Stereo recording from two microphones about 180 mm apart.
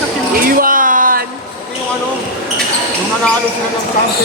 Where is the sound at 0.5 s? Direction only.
50° right (ahead or behind).